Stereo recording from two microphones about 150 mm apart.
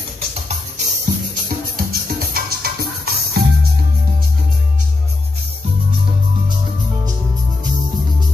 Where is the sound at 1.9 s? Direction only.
85° right.